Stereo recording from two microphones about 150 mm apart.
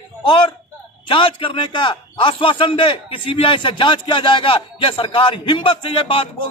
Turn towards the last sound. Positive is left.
turn(degrees=35)  # may be behind; listen again after turning